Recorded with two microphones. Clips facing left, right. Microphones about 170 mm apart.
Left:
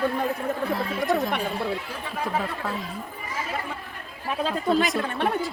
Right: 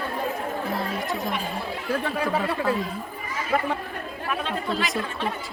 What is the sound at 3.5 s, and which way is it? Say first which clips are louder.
Speech: right 11 dB; 60° right (ahead or behind).